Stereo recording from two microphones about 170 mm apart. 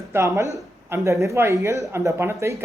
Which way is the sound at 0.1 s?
15° right (ahead or behind).